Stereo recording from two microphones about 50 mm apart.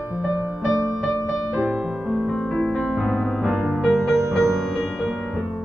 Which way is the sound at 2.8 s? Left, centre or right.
Centre.